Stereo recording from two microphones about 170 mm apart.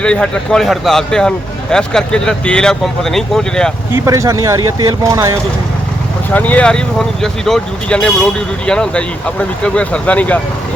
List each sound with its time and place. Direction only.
0.0 s speech: 5° left (ahead or behind)
3.9 s speech: 15° right (ahead or behind)
6.3 s speech: 10° left (ahead or behind)